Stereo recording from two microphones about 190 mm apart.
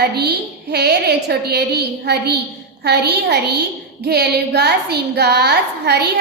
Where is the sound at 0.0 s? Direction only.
60° right (ahead or behind).